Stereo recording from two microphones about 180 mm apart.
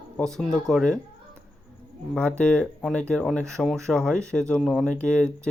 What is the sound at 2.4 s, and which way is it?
Speech, 5° left (ahead or behind).